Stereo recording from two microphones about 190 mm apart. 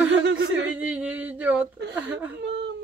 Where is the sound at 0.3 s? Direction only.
70° right (ahead or behind).